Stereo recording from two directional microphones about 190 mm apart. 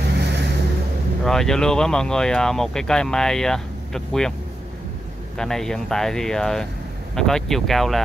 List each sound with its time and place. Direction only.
0.2 s vehicle: 60° right (ahead or behind)
1.2 s speech: centre (ahead or behind)
5.4 s speech: centre (ahead or behind)